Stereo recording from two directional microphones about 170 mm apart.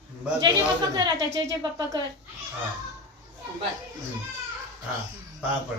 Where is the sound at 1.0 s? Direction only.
20° right (ahead or behind).